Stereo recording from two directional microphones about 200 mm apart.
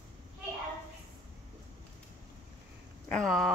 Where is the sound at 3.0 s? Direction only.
5° left (ahead or behind).